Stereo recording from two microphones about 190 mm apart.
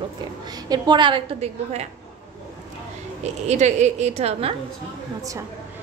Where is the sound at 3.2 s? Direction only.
35° right (ahead or behind).